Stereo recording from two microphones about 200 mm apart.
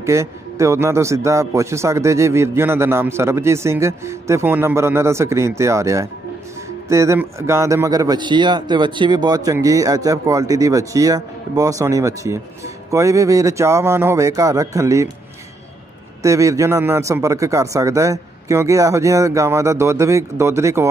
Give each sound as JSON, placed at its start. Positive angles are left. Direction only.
{"t": 0.0, "sound": "a man's voice", "side_deg": -15}
{"t": 16.2, "sound": "a man's voice", "side_deg": -15}